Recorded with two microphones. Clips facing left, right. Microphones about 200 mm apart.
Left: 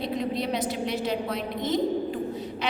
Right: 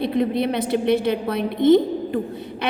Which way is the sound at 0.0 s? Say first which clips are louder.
Right 8 dB; 60° right (ahead or behind).